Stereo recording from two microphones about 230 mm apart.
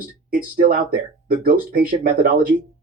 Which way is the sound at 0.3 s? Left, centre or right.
Right.